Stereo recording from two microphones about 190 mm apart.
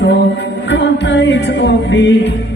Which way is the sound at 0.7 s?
70° left (ahead or behind).